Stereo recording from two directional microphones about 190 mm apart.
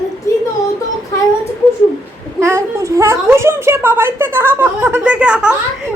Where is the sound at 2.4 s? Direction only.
15° right (ahead or behind).